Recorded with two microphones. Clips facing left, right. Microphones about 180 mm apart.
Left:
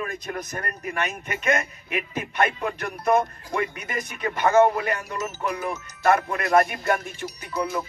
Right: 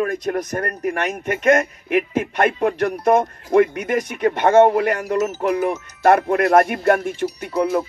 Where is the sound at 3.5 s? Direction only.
70° right (ahead or behind).